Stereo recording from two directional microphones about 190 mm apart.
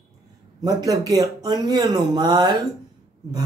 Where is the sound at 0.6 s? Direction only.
20° right (ahead or behind).